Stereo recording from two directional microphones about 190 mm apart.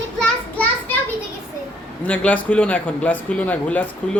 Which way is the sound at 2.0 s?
10° left (ahead or behind).